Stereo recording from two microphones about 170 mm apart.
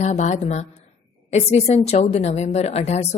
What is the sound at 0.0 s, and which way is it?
A woman's voice, 45° left (ahead or behind).